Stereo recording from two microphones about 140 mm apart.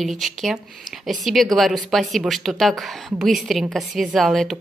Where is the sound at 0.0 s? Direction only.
Centre (ahead or behind).